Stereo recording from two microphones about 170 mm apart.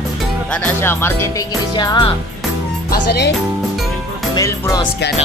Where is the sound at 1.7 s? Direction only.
30° left (ahead or behind).